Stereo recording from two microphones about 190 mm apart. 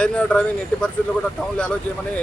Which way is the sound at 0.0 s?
5° left (ahead or behind).